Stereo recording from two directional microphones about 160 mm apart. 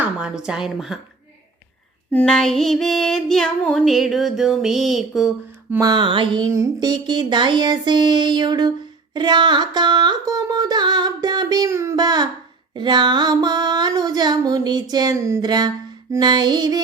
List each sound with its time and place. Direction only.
0.0 s female singing: 5° right (ahead or behind)
2.1 s female singing: 5° left (ahead or behind)
5.7 s a sound: 25° right (ahead or behind)